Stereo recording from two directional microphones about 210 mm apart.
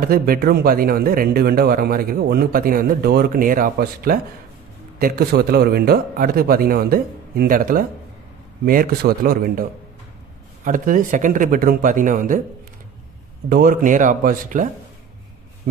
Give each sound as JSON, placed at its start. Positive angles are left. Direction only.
{"t": 0.0, "sound": "a man's voice", "side_deg": -45}
{"t": 13.5, "sound": "a man's voice", "side_deg": -40}